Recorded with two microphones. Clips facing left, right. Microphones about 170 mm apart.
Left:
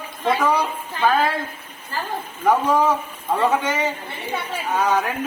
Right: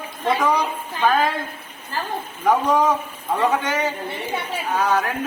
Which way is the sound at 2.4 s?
Centre (ahead or behind).